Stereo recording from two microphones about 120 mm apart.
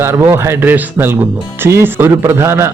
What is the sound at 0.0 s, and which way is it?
A man's voice, 20° right (ahead or behind).